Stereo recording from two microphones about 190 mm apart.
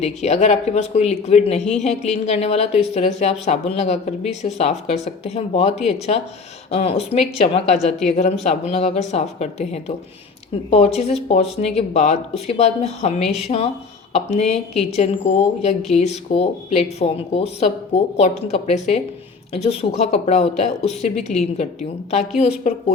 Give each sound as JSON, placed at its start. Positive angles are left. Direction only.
{"t": 0.0, "sound": "speech", "side_deg": 35}